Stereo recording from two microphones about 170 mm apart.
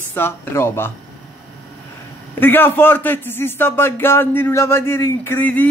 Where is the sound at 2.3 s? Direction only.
10° left (ahead or behind).